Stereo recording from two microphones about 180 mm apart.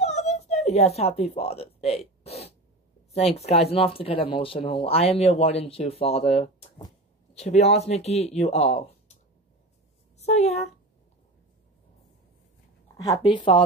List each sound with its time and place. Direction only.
0.0 s a sound: 40° left (ahead or behind)
3.3 s speech: 35° left (ahead or behind)
13.1 s speech: 30° left (ahead or behind)